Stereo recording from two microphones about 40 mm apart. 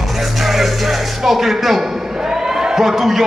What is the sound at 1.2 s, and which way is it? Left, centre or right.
A man's voice, centre.